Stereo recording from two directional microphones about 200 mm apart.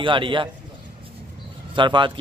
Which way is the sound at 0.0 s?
25° right (ahead or behind).